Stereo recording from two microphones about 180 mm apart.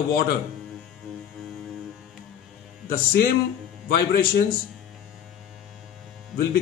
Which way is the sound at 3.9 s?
60° left (ahead or behind).